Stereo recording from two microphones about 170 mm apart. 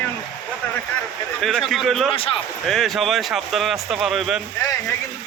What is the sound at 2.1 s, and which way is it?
Speech, 30° left (ahead or behind).